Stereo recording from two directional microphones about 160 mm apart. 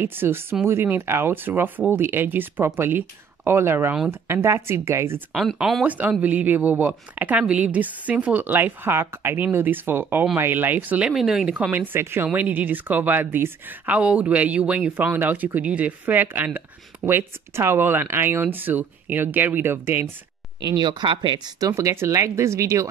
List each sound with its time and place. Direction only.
0.0 s speech: 15° right (ahead or behind)
5.3 s speech: centre (ahead or behind)
20.6 s speech: 30° right (ahead or behind)